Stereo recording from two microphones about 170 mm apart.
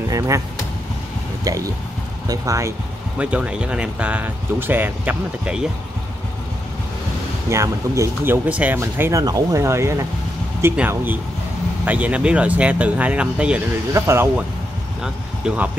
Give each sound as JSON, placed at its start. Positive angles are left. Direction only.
{"t": 1.4, "sound": "speech", "side_deg": -20}
{"t": 3.2, "sound": "speech", "side_deg": -5}
{"t": 7.4, "sound": "speech", "side_deg": -20}
{"t": 15.4, "sound": "speech", "side_deg": -10}